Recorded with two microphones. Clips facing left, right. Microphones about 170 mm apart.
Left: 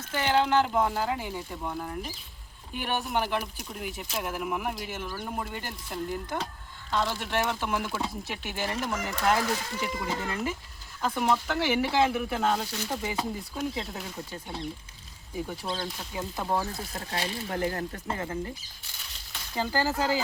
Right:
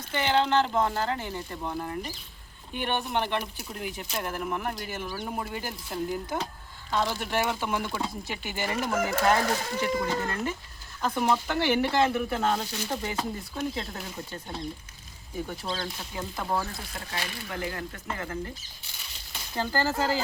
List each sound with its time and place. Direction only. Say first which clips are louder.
0.1 s speech: even; 5° left (ahead or behind)
15.6 s speech: even; 5° left (ahead or behind)
16.1 s speech: left 1 dB; 20° left (ahead or behind)
16.9 s speech: left 3 dB; 30° left (ahead or behind)
19.5 s speech: even; 10° left (ahead or behind)